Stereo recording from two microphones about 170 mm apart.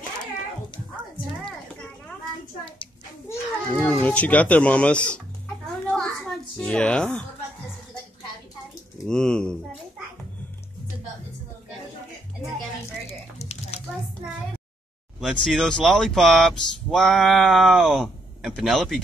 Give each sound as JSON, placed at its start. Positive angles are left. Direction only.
{"t": 3.7, "sound": "speech", "side_deg": 10}
{"t": 5.9, "sound": "a sound", "side_deg": 5}
{"t": 6.5, "sound": "speech", "side_deg": 5}
{"t": 9.0, "sound": "speech", "side_deg": 5}
{"t": 13.4, "sound": "a sound", "side_deg": 40}
{"t": 15.1, "sound": "speech", "side_deg": 0}